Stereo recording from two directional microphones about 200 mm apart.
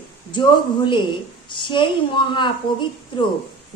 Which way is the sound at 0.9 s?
25° left (ahead or behind).